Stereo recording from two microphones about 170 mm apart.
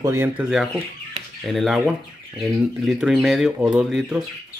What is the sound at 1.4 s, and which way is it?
Speech, centre (ahead or behind).